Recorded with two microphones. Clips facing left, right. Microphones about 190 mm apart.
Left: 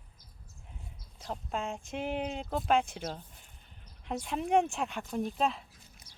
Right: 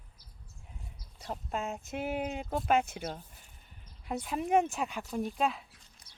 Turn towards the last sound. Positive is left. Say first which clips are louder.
# even
turn(degrees=-5)  # may be behind; listen again after turning